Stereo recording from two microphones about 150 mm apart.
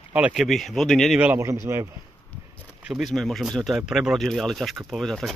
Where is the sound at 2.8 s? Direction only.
Centre (ahead or behind).